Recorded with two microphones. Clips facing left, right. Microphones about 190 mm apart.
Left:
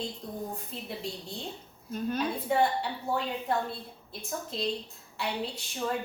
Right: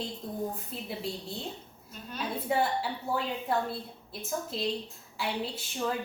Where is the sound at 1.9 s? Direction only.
50° left (ahead or behind).